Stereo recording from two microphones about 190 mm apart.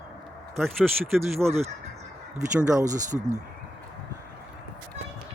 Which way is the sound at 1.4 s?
5° left (ahead or behind).